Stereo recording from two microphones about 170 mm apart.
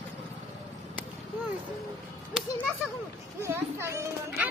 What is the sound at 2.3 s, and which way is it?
Children playing, 5° right (ahead or behind).